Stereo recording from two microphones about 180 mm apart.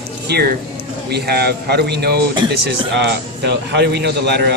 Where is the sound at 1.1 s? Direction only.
65° right (ahead or behind).